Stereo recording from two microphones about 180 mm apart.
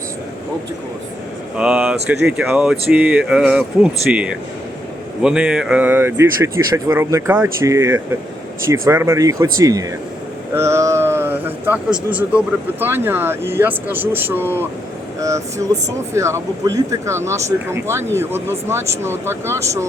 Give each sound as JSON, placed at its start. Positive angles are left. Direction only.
{"t": 1.5, "sound": "a man's voice", "side_deg": -5}